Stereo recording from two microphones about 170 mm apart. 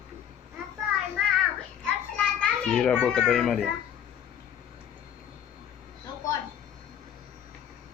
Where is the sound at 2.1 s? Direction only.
5° left (ahead or behind).